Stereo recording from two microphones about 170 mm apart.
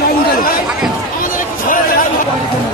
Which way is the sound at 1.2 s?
55° left (ahead or behind).